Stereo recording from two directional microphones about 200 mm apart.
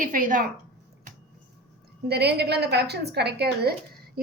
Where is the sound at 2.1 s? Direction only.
55° right (ahead or behind).